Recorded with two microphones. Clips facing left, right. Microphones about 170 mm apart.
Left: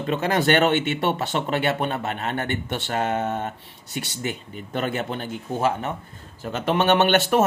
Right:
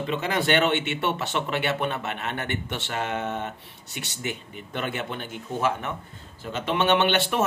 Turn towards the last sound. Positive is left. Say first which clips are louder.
# left 4 dB
turn(degrees=45)  # may be behind; listen again after turning